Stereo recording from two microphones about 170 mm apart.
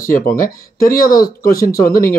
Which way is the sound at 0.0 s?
55° left (ahead or behind).